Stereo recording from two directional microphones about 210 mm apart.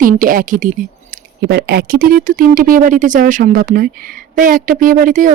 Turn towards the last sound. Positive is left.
turn(degrees=-40)  # may be behind; listen again after turning